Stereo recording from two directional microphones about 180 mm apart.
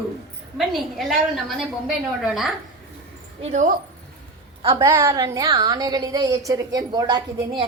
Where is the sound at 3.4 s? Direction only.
40° right (ahead or behind).